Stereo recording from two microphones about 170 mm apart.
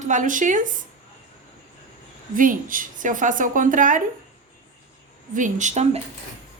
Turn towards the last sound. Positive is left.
turn(degrees=-45)  # may be behind; listen again after turning